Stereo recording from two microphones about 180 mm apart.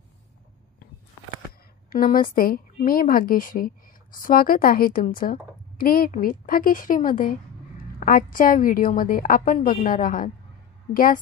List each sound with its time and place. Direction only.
1.9 s speech: 50° left (ahead or behind)